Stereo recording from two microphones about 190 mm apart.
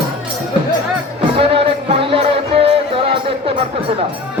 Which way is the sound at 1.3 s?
30° right (ahead or behind).